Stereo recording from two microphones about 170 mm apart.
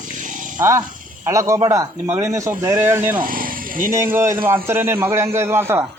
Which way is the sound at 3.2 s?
55° right (ahead or behind).